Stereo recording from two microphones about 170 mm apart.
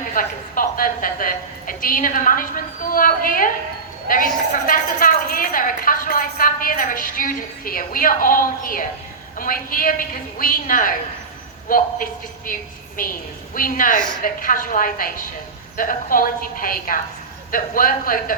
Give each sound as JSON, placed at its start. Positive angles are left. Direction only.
{"t": 0.1, "sound": "a woman's voice", "side_deg": 50}